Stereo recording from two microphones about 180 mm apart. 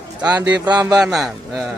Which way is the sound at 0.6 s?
20° right (ahead or behind).